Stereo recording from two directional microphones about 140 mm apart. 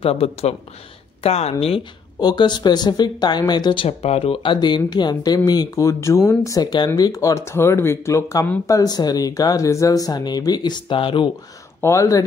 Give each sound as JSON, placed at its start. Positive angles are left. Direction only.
{"t": 0.0, "sound": "speech", "side_deg": 45}
{"t": 2.1, "sound": "speech", "side_deg": 30}
{"t": 11.8, "sound": "speech", "side_deg": 20}